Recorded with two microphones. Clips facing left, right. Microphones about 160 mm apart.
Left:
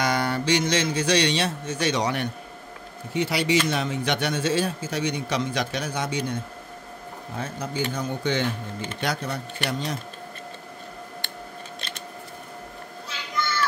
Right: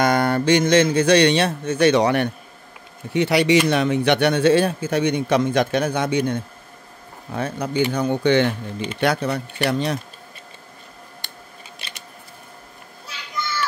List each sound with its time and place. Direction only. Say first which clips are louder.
0.0 s a man's voice: right 6 dB; 50° right (ahead or behind)